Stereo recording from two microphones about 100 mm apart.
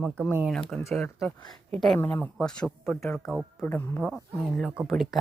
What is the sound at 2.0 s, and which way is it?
Speech, 15° left (ahead or behind).